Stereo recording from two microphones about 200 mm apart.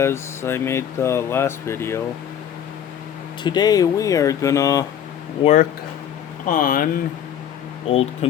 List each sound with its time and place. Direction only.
0.0 s speech: 10° left (ahead or behind)
3.4 s speech: 20° left (ahead or behind)
5.4 s speech: 35° left (ahead or behind)
7.9 s speech: 30° left (ahead or behind)